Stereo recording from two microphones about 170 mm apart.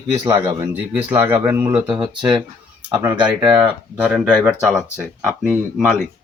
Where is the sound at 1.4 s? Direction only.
15° right (ahead or behind).